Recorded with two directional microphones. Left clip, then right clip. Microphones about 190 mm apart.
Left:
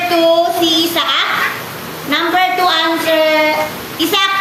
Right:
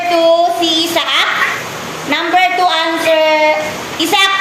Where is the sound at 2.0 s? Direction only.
30° left (ahead or behind).